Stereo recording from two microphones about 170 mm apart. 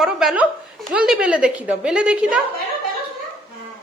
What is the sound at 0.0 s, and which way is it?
A woman's voice, centre (ahead or behind).